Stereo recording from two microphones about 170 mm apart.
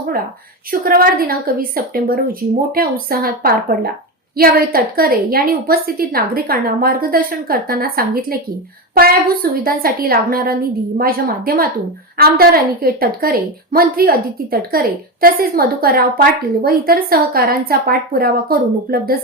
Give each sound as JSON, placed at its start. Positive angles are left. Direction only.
{"t": 0.7, "sound": "a woman's voice", "side_deg": -55}